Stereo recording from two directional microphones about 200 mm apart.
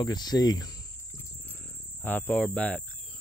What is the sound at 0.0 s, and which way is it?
Cricket, 20° left (ahead or behind).